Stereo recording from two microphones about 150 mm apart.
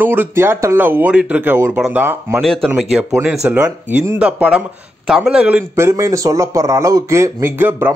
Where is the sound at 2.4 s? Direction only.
5° left (ahead or behind).